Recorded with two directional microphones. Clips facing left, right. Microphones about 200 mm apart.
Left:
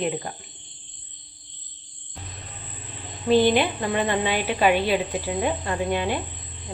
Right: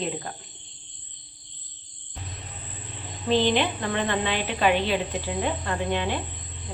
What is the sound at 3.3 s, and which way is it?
Speech, 10° left (ahead or behind).